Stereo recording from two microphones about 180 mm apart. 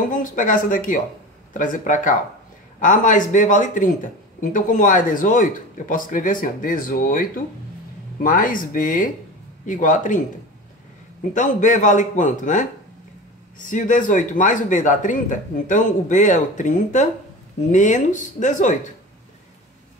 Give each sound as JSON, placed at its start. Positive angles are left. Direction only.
{"t": 0.1, "sound": "speech", "side_deg": 50}
{"t": 11.3, "sound": "speech", "side_deg": 45}